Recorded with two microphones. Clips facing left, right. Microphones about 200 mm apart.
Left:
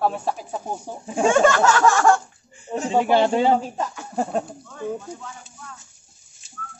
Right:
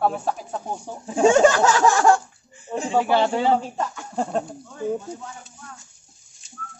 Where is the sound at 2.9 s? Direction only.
15° left (ahead or behind).